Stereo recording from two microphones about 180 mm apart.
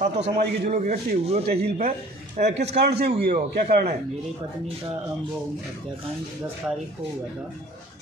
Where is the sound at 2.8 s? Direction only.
65° right (ahead or behind).